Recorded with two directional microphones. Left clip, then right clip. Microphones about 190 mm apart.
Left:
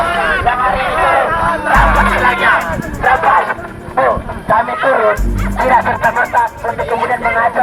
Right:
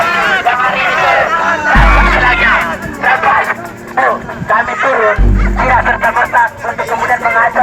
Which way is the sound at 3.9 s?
10° right (ahead or behind).